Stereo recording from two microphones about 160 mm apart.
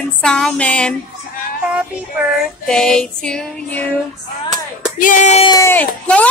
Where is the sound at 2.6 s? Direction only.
5° left (ahead or behind).